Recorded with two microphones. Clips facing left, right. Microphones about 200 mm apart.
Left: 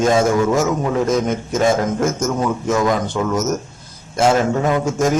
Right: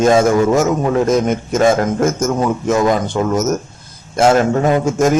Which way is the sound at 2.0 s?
50° right (ahead or behind).